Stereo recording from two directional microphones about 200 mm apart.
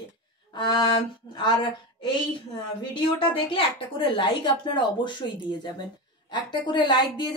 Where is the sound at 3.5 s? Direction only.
25° left (ahead or behind).